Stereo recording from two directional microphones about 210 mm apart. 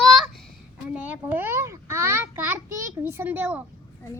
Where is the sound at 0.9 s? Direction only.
10° right (ahead or behind).